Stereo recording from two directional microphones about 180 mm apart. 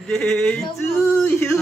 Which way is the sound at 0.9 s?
15° left (ahead or behind).